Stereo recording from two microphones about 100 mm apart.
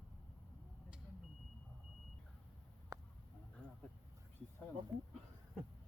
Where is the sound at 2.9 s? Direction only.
35° right (ahead or behind).